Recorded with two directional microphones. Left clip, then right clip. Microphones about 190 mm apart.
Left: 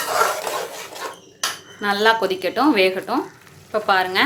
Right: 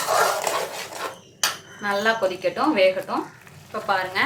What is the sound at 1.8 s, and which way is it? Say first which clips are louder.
A woman's voice: left 4 dB; 50° left (ahead or behind).